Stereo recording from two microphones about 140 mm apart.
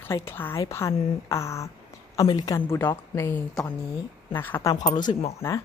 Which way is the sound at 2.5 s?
15° left (ahead or behind).